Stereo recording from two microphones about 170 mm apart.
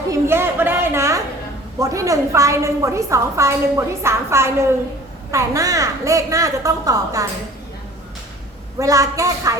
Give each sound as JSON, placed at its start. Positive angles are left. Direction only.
{"t": 0.1, "sound": "a sound", "side_deg": -15}
{"t": 1.8, "sound": "a woman's voice", "side_deg": -20}
{"t": 8.8, "sound": "a woman's voice", "side_deg": -20}